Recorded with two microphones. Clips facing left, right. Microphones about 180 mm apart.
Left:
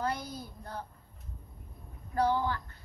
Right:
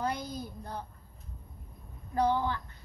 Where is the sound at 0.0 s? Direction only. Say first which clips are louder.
Right 1 dB; 15° right (ahead or behind).